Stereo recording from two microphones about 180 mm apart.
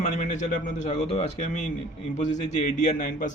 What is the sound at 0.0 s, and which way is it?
A man's voice, 45° left (ahead or behind).